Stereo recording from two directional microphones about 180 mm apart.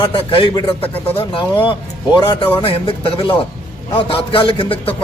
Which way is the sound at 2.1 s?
25° left (ahead or behind).